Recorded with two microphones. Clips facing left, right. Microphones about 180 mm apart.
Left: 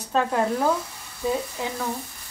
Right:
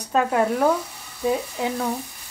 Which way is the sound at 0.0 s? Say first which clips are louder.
Right 2 dB; 10° right (ahead or behind).